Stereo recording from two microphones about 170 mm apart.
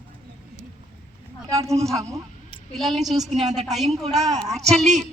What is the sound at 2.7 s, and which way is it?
A woman's voice, centre (ahead or behind).